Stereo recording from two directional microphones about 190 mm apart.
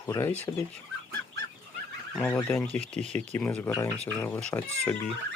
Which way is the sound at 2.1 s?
Centre (ahead or behind).